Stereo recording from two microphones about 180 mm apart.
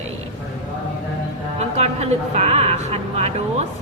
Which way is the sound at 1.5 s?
35° right (ahead or behind).